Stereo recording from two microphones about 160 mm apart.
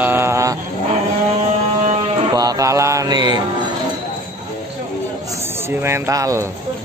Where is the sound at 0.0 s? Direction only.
15° right (ahead or behind).